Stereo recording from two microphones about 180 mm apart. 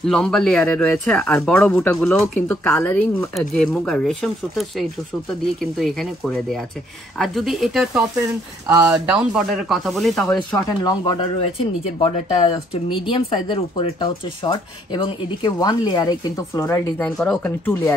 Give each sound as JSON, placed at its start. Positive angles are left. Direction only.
{"t": 0.0, "sound": "speech", "side_deg": 5}
{"t": 10.3, "sound": "speech", "side_deg": 20}